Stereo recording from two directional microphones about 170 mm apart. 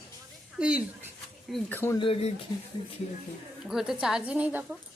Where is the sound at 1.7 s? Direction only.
15° left (ahead or behind).